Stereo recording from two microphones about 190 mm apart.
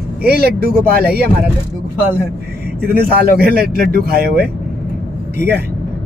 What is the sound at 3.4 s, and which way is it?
Speech, 50° right (ahead or behind).